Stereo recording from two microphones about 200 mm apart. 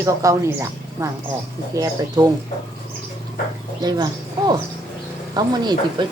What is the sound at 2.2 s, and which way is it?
Speech, 20° right (ahead or behind).